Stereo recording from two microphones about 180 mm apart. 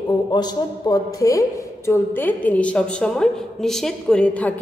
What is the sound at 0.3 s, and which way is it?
A man's voice, 25° left (ahead or behind).